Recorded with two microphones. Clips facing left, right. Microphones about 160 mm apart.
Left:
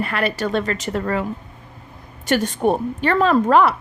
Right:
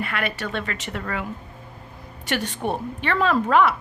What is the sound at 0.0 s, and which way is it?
A woman's voice, 35° left (ahead or behind).